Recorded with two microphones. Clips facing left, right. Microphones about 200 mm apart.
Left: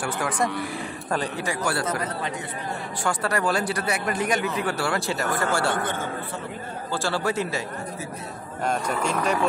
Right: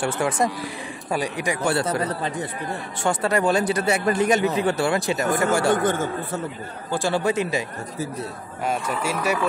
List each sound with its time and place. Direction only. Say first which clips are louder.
0.0 s a man's voice: right 4 dB; 25° right (ahead or behind)
1.1 s a man's voice: right 2 dB; 15° right (ahead or behind); by 2.3 s 35° right (ahead or behind)
3.0 s a man's voice: right 4 dB; 20° right (ahead or behind)
5.9 s speech: right 6 dB; 45° right (ahead or behind)
6.9 s speech: right 4 dB; 15° right (ahead or behind)
8.6 s speech: even; 5° right (ahead or behind)